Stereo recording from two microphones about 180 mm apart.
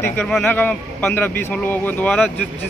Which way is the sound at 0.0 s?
15° left (ahead or behind).